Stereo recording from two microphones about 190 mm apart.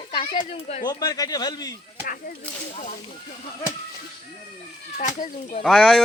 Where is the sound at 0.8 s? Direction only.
20° left (ahead or behind).